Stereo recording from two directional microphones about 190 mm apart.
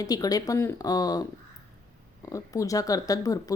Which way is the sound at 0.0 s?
20° left (ahead or behind).